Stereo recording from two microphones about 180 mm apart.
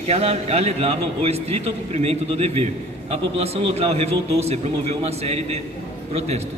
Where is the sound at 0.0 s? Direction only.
35° right (ahead or behind).